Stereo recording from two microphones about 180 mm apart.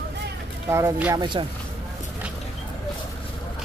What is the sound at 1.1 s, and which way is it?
Speech, 25° right (ahead or behind).